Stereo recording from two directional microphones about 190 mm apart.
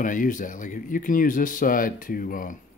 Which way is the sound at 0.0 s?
45° left (ahead or behind).